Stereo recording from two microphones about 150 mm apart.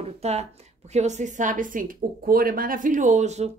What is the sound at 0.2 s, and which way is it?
A woman's voice, 45° right (ahead or behind).